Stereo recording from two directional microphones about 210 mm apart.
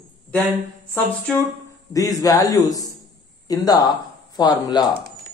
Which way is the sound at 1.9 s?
15° left (ahead or behind).